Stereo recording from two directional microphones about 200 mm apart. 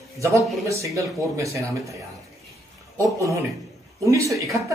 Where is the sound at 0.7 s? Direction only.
15° right (ahead or behind).